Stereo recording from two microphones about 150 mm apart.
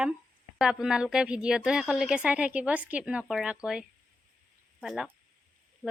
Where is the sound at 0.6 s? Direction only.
5° right (ahead or behind).